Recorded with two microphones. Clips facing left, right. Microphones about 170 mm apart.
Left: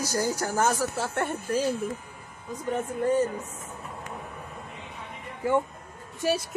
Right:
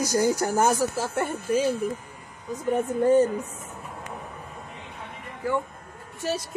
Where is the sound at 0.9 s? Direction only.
5° right (ahead or behind).